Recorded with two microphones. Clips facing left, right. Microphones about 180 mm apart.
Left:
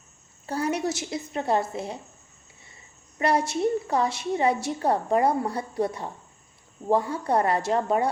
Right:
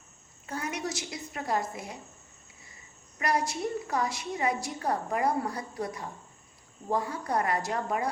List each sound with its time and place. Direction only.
0.4 s a woman's voice: 35° left (ahead or behind)
3.2 s a woman's voice: 30° left (ahead or behind)